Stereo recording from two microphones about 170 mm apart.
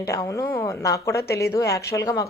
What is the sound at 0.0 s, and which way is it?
A woman's voice, 20° left (ahead or behind).